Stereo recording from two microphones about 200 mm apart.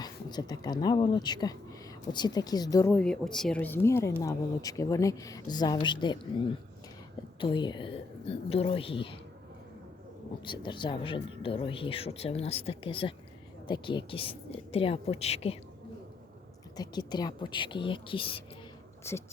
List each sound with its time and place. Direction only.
0.0 s speech: 20° left (ahead or behind)
7.3 s speech: 25° left (ahead or behind)
10.4 s speech: 25° left (ahead or behind)
16.7 s speech: 20° left (ahead or behind)
19.1 s speech: 10° left (ahead or behind)